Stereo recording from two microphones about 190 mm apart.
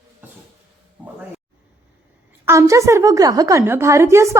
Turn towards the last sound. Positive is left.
turn(degrees=-15)  # may be behind; listen again after turning